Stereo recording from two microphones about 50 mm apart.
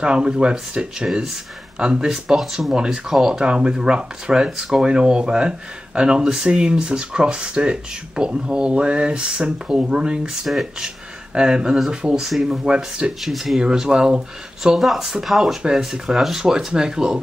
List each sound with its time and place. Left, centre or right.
0.0 s speech: centre
1.0 s speech: centre
10.4 s speech: centre
11.3 s speech: centre
13.2 s speech: centre
13.6 s speech: centre
14.8 s speech: centre